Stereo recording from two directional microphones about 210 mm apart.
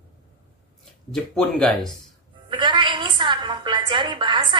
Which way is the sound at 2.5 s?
20° right (ahead or behind).